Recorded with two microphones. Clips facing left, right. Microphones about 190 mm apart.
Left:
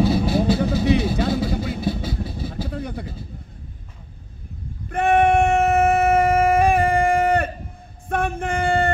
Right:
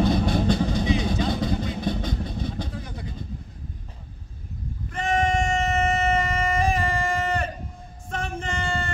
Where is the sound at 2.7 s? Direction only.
60° left (ahead or behind).